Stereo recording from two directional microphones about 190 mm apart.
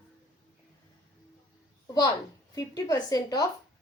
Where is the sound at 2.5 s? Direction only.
15° left (ahead or behind).